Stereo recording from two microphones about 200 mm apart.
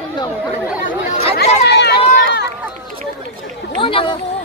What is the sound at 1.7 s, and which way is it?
Speech, 55° left (ahead or behind).